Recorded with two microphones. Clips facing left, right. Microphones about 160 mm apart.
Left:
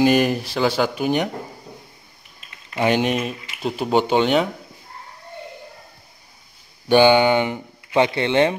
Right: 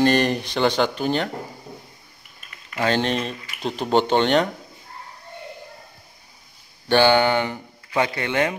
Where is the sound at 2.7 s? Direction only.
15° left (ahead or behind).